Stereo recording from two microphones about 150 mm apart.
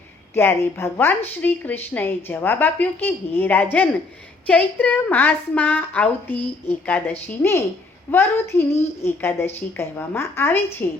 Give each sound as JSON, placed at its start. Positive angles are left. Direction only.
{"t": 0.3, "sound": "a woman's voice", "side_deg": 15}